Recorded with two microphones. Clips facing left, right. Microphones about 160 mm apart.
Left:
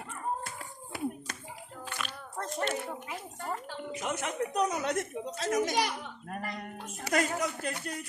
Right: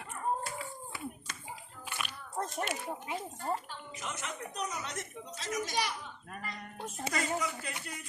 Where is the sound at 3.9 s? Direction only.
55° left (ahead or behind).